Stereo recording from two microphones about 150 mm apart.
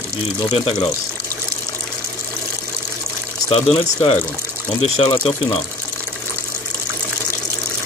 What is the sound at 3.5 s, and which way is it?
Speech, 40° left (ahead or behind).